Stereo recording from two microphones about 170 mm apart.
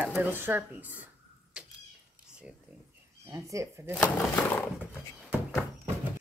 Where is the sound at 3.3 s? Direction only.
20° right (ahead or behind).